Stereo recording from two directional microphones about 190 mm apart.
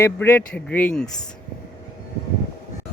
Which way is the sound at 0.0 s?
10° left (ahead or behind).